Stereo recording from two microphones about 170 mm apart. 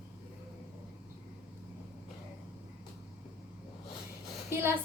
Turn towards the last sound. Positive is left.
turn(degrees=-15)  # may be behind; listen again after turning